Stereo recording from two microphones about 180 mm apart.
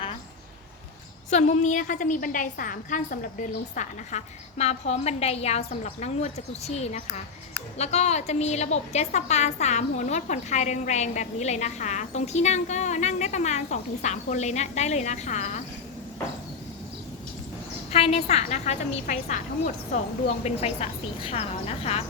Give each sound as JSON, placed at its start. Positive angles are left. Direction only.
{"t": 1.3, "sound": "a woman's voice", "side_deg": 40}
{"t": 17.9, "sound": "a woman's voice", "side_deg": 35}